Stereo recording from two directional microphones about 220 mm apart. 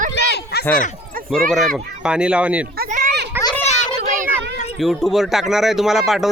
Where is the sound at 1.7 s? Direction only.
5° right (ahead or behind).